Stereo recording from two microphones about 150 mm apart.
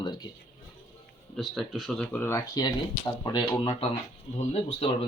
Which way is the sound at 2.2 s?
20° left (ahead or behind).